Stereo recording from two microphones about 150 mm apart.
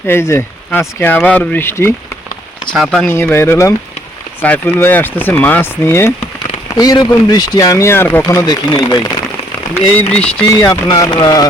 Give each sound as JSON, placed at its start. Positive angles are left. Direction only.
{"t": 0.1, "sound": "speech", "side_deg": 15}
{"t": 2.7, "sound": "speech", "side_deg": 5}
{"t": 3.1, "sound": "a man's voice", "side_deg": 15}
{"t": 9.9, "sound": "speech", "side_deg": 10}
{"t": 10.5, "sound": "a man's voice", "side_deg": 20}